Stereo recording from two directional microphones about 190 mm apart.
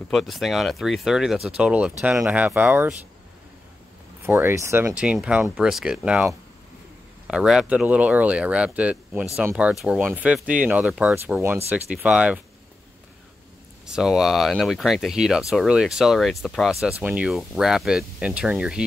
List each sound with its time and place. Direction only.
0.1 s speech: centre (ahead or behind)
4.2 s speech: 10° right (ahead or behind)
7.2 s speech: 5° right (ahead or behind)
13.8 s speech: 5° right (ahead or behind)